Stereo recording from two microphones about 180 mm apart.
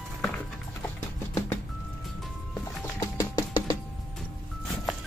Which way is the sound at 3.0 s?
20° left (ahead or behind).